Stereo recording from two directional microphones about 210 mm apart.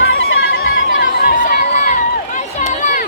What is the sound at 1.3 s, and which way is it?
Crowd, 40° left (ahead or behind).